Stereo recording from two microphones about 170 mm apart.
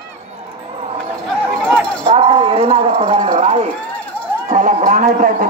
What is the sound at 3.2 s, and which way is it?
A man's voice, 45° right (ahead or behind).